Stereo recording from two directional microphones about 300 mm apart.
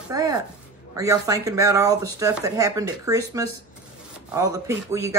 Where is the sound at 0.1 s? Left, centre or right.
Centre.